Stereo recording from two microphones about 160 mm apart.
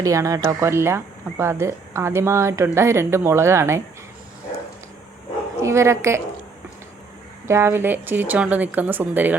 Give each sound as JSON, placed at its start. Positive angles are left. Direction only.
{"t": 0.0, "sound": "speech", "side_deg": -20}
{"t": 5.6, "sound": "speech", "side_deg": -15}
{"t": 7.4, "sound": "speech", "side_deg": -15}